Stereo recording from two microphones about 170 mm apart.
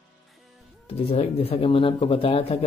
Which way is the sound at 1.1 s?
35° left (ahead or behind).